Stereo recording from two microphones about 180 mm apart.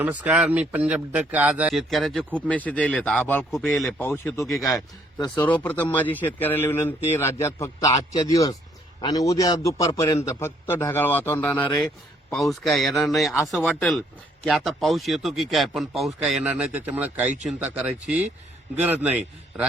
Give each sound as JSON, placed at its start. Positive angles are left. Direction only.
{"t": 0.0, "sound": "speech", "side_deg": -10}
{"t": 4.0, "sound": "a man's voice", "side_deg": 10}
{"t": 12.3, "sound": "a man's voice", "side_deg": 0}